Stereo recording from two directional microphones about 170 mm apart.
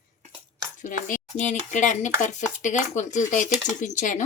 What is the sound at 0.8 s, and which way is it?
Speech, 50° left (ahead or behind).